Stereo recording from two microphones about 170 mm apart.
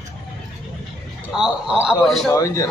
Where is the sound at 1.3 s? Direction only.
5° right (ahead or behind).